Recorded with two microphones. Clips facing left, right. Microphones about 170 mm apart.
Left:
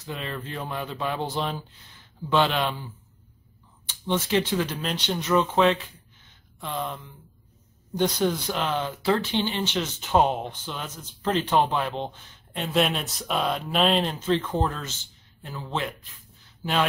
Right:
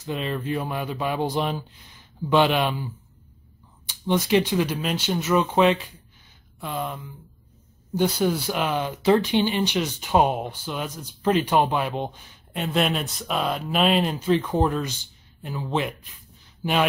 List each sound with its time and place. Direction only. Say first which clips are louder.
0.0 s speech: right 6 dB; 20° right (ahead or behind)
8.2 s speech: right 2 dB; 10° right (ahead or behind)
12.5 s speech: right 1 dB; centre (ahead or behind)